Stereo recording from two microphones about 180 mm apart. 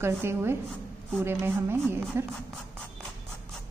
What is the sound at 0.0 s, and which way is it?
Speech, 15° right (ahead or behind).